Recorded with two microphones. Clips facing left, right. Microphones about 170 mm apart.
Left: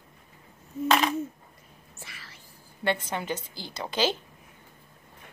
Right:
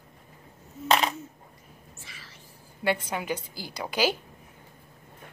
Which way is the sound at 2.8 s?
10° right (ahead or behind).